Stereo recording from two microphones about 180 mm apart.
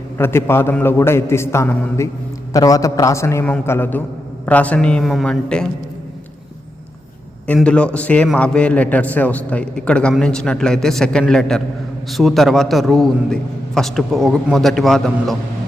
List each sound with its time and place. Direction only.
0.2 s a man's voice: 15° left (ahead or behind)
7.4 s a man's voice: 5° left (ahead or behind)